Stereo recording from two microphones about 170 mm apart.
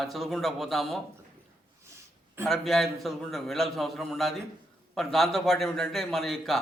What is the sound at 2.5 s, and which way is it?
A man's voice, centre (ahead or behind).